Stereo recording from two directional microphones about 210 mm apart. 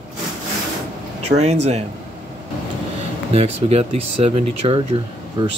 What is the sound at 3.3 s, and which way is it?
Speech, 30° right (ahead or behind).